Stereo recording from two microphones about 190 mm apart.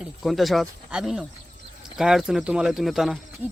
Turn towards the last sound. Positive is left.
turn(degrees=0)  # may be behind; listen again after turning